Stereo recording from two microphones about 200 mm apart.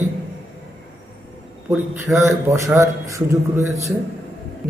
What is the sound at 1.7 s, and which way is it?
A man's voice, 10° right (ahead or behind).